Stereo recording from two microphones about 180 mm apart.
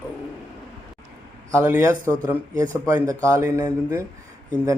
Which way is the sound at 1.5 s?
15° right (ahead or behind).